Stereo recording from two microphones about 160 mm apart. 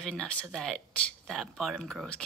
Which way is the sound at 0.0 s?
5° left (ahead or behind).